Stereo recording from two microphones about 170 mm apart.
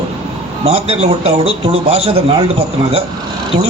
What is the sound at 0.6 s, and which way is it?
A man's voice, 35° right (ahead or behind).